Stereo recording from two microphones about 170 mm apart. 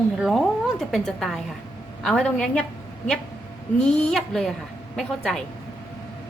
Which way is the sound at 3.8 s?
5° left (ahead or behind).